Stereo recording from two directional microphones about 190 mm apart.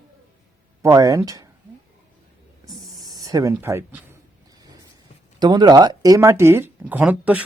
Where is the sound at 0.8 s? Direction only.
20° right (ahead or behind).